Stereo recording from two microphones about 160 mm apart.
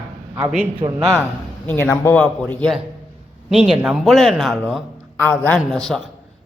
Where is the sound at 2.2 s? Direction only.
5° left (ahead or behind).